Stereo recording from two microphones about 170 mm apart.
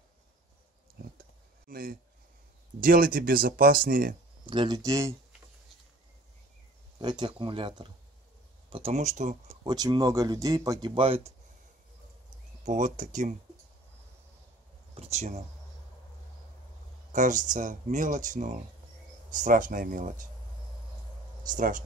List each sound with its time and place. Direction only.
1.0 s speech: 60° right (ahead or behind)
4.5 s speech: 25° right (ahead or behind)
7.0 s speech: 25° right (ahead or behind); by 9.4 s 50° right (ahead or behind)
9.7 s speech: 25° right (ahead or behind)
11.0 s speech: 35° right (ahead or behind)
12.6 s speech: 45° right (ahead or behind)
15.0 s speech: 40° right (ahead or behind)
17.1 s speech: 50° right (ahead or behind)
21.5 s speech: 50° right (ahead or behind)